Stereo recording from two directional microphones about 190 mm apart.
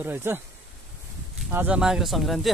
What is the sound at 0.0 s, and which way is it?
Speech, 10° right (ahead or behind).